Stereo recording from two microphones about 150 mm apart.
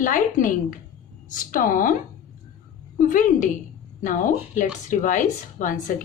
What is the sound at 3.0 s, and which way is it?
A woman's voice, 60° left (ahead or behind).